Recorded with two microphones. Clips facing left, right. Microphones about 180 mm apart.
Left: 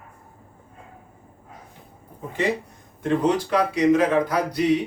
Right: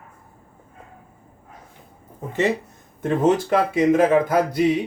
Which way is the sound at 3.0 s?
50° right (ahead or behind).